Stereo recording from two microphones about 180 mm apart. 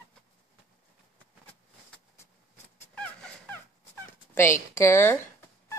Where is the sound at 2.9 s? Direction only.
5° left (ahead or behind).